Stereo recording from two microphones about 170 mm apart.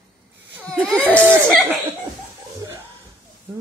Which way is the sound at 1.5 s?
10° right (ahead or behind).